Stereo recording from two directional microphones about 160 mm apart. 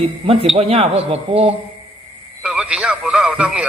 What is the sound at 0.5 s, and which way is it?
Speech, 35° right (ahead or behind).